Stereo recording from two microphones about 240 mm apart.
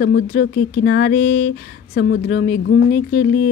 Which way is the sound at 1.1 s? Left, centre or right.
Left.